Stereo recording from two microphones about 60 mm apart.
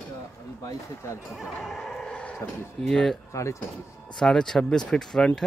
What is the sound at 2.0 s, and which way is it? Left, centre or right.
Dog, centre.